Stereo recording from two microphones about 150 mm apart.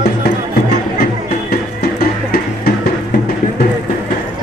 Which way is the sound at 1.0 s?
90° left.